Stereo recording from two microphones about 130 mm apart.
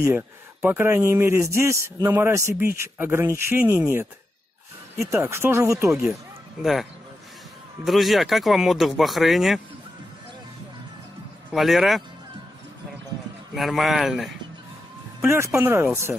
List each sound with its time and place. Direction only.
0.0 s speech: 15° right (ahead or behind)
6.6 s speech: centre (ahead or behind)
11.5 s speech: centre (ahead or behind)
13.6 s speech: centre (ahead or behind)
15.2 s speech: 20° right (ahead or behind)